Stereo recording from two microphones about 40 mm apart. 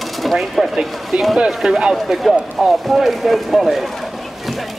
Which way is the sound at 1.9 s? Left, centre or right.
Centre.